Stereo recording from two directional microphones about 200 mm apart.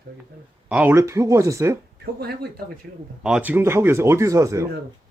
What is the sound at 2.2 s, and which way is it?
Speech, 55° right (ahead or behind).